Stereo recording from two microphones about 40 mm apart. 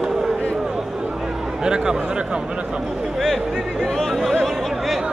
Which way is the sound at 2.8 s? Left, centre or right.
Centre.